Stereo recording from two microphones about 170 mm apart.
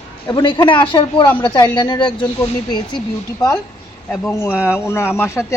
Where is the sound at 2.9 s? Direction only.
5° left (ahead or behind).